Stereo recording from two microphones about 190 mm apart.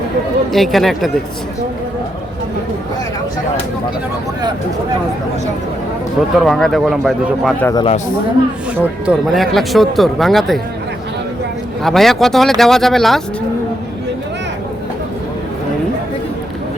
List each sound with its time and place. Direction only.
0.5 s speech: centre (ahead or behind)
6.3 s speech: centre (ahead or behind)
7.6 s speech: 20° left (ahead or behind)
8.8 s speech: 5° right (ahead or behind)
11.8 s speech: centre (ahead or behind)